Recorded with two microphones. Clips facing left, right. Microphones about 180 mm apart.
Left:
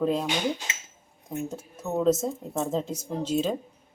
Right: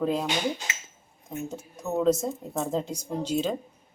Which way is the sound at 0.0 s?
Centre (ahead or behind).